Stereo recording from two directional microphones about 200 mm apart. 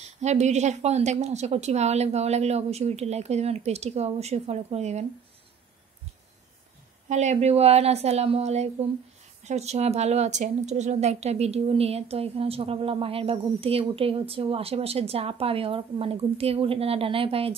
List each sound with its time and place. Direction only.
0.2 s a woman's voice: 35° right (ahead or behind)
7.1 s a woman's voice: 35° right (ahead or behind)